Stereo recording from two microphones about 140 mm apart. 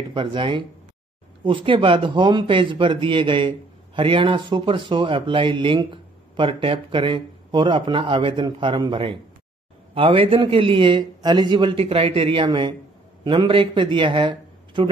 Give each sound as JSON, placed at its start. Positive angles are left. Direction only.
{"t": 0.1, "sound": "a man's voice", "side_deg": -35}